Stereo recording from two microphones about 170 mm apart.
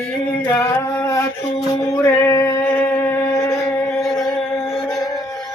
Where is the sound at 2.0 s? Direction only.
15° left (ahead or behind).